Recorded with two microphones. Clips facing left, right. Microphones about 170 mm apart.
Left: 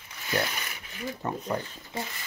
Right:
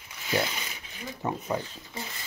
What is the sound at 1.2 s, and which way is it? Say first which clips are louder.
Speech: right 2 dB; 10° right (ahead or behind).